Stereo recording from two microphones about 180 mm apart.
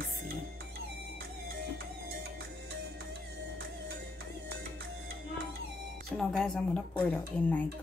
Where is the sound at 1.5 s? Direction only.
60° right (ahead or behind).